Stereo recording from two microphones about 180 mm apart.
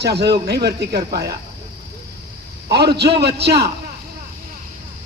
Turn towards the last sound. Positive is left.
turn(degrees=-65)  # may be behind; listen again after turning